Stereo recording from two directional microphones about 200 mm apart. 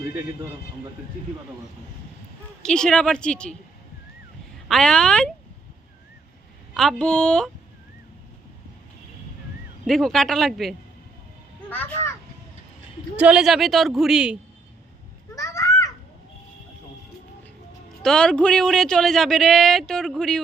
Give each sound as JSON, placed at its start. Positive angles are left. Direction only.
{"t": 2.6, "sound": "speech", "side_deg": 5}
{"t": 4.7, "sound": "speech", "side_deg": 5}
{"t": 6.7, "sound": "speech", "side_deg": 5}
{"t": 9.8, "sound": "a child's voice", "side_deg": 0}
{"t": 13.1, "sound": "speech", "side_deg": -5}
{"t": 15.4, "sound": "a sound", "side_deg": 15}
{"t": 18.0, "sound": "speech", "side_deg": 5}